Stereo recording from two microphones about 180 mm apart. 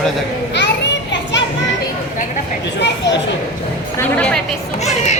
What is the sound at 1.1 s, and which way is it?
Music, 85° left.